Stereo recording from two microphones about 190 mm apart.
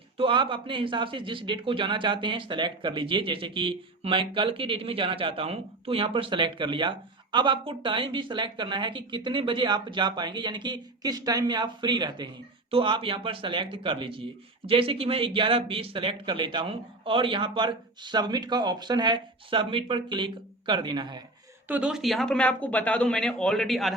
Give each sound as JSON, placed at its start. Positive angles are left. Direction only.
{"t": 0.2, "sound": "speech", "side_deg": -25}
{"t": 21.7, "sound": "speech", "side_deg": -5}